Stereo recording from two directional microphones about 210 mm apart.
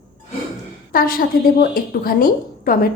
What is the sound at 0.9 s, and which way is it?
A woman's voice, 45° left (ahead or behind).